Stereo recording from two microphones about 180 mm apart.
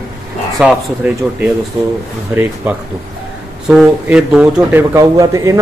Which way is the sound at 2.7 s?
10° right (ahead or behind).